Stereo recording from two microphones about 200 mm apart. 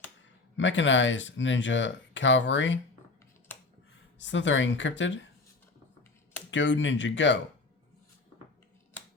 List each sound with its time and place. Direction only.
0.5 s speech: 70° left (ahead or behind)
4.2 s speech: 65° left (ahead or behind)
6.5 s speech: 65° left (ahead or behind)